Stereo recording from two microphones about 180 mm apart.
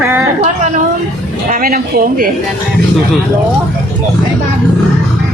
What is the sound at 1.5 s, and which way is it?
Speech, 50° right (ahead or behind).